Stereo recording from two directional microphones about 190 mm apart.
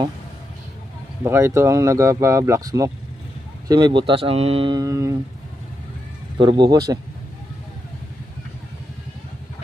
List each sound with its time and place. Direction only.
1.2 s speech: 15° right (ahead or behind)
6.3 s speech: 25° right (ahead or behind)